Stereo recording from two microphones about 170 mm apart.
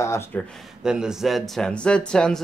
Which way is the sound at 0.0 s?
15° left (ahead or behind).